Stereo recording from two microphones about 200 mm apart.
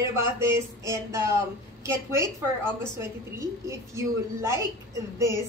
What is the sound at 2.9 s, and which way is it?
A woman's voice, 15° right (ahead or behind).